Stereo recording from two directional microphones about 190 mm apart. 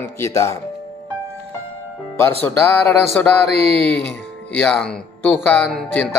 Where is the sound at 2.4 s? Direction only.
10° left (ahead or behind).